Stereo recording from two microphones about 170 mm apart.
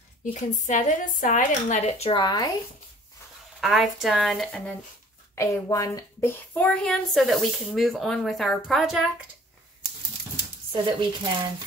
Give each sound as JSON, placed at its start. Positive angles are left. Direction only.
{"t": 0.2, "sound": "a woman's voice", "side_deg": 50}
{"t": 3.6, "sound": "speech", "side_deg": 0}
{"t": 5.3, "sound": "speech", "side_deg": 15}
{"t": 10.7, "sound": "speech", "side_deg": -30}